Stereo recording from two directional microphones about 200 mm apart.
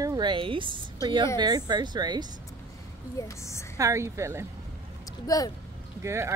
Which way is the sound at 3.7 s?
15° right (ahead or behind).